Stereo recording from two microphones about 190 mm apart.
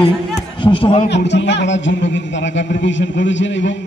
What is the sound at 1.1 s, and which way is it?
A man's voice, 65° left (ahead or behind).